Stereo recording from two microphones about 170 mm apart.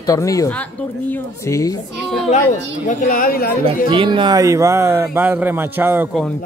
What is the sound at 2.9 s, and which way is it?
Speech, 50° left (ahead or behind).